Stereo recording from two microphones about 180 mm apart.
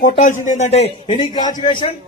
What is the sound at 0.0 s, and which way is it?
A man's voice, 45° left (ahead or behind).